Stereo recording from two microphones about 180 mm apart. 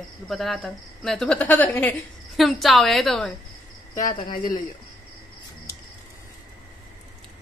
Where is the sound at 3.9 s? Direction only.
20° left (ahead or behind).